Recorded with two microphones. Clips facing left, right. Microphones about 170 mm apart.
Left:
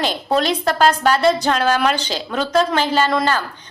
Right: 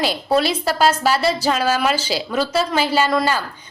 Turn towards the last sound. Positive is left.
turn(degrees=-5)  # may be behind; listen again after turning